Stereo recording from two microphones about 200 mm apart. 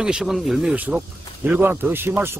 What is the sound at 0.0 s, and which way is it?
Speech, 5° right (ahead or behind).